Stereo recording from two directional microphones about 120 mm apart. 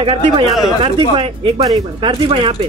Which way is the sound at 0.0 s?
45° right (ahead or behind).